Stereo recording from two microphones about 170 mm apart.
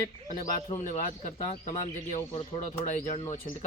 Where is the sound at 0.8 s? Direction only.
45° left (ahead or behind).